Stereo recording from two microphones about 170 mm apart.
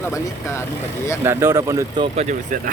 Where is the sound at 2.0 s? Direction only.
40° right (ahead or behind).